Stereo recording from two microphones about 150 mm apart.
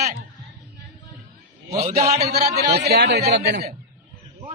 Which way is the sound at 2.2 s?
90° right.